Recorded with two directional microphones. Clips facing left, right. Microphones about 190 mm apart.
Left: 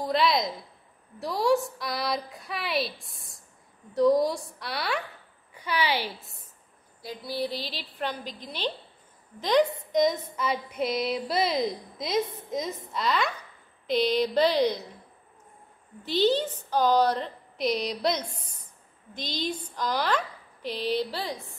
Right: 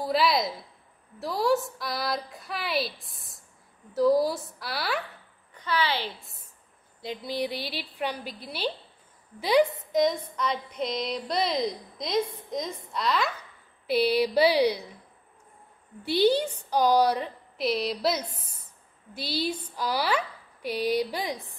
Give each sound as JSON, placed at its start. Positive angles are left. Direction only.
{"t": 0.0, "sound": "a woman's voice", "side_deg": -5}
{"t": 5.5, "sound": "a woman's voice", "side_deg": 10}
{"t": 7.0, "sound": "a woman's voice", "side_deg": -20}
{"t": 16.1, "sound": "speech", "side_deg": -10}